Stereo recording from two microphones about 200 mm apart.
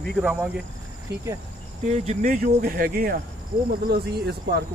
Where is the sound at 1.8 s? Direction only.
35° right (ahead or behind); by 4.6 s 55° right (ahead or behind).